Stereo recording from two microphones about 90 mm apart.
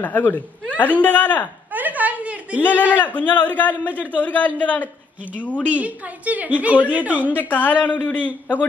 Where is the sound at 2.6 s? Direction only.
20° left (ahead or behind).